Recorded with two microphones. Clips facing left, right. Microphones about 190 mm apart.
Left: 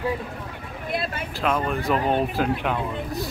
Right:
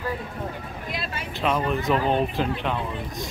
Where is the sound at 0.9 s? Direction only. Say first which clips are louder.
Left 6 dB; 55° left (ahead or behind).